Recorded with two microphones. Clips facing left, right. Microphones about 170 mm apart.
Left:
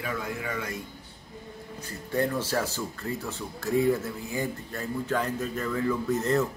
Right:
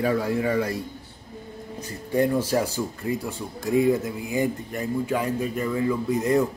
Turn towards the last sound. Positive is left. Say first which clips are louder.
# right 4 dB
turn(degrees=-15)  # may be behind; listen again after turning